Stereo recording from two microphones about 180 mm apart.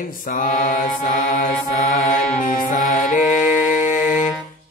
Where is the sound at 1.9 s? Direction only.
45° left (ahead or behind).